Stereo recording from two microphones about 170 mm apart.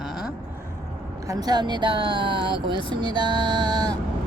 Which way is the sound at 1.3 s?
25° right (ahead or behind).